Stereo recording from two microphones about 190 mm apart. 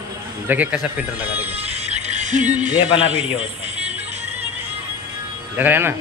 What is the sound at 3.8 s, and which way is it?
Music, 5° right (ahead or behind).